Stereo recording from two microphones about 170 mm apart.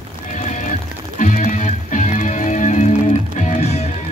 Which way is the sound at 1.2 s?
45° left (ahead or behind).